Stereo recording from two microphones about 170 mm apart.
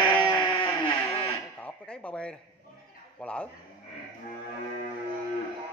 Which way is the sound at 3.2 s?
5° left (ahead or behind).